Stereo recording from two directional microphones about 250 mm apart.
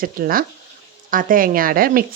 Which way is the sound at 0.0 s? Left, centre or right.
Right.